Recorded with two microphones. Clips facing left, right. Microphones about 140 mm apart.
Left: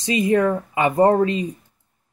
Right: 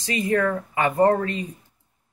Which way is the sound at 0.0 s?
20° left (ahead or behind).